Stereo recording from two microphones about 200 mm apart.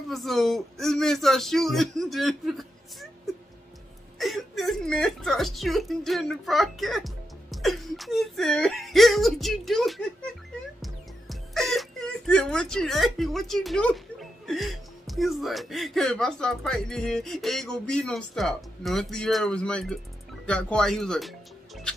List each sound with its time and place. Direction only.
0.1 s speech: centre (ahead or behind)